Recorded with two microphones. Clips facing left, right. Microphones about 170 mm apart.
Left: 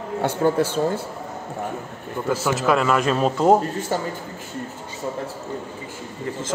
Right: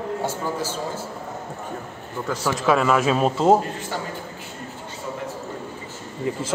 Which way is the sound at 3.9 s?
40° left (ahead or behind).